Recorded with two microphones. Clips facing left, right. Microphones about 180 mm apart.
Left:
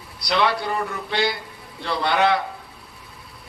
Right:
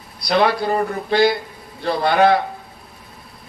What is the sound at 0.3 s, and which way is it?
A man's voice, 45° right (ahead or behind).